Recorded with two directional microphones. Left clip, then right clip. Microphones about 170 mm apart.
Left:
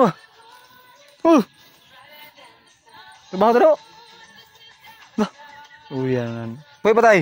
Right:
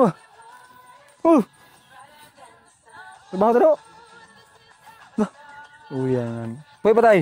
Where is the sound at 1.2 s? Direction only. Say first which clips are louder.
Left 1 dB; 10° left (ahead or behind).